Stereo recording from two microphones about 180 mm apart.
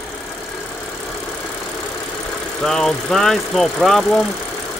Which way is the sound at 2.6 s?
5° left (ahead or behind).